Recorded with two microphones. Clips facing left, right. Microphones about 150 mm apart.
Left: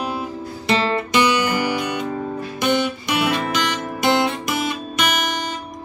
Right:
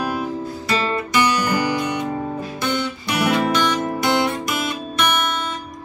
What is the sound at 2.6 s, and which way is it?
Music, 20° left (ahead or behind).